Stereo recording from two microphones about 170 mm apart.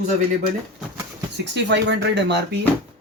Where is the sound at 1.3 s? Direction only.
90° right.